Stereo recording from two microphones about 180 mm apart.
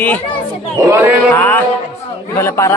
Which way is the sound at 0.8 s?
15° right (ahead or behind).